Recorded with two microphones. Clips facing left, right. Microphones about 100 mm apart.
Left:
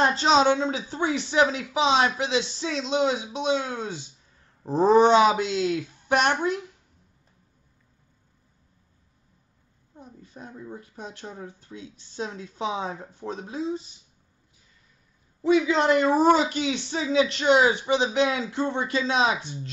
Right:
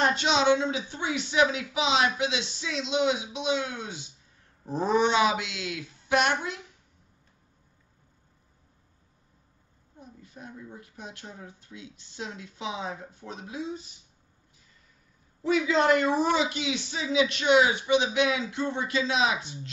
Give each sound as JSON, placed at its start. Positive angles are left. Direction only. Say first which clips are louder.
{"t": 0.0, "sound": "speech", "louder": "left 4 dB", "side_deg": 35}
{"t": 9.9, "sound": "speech", "louder": "left 3 dB", "side_deg": 35}
{"t": 15.4, "sound": "speech", "louder": "left 3 dB", "side_deg": 25}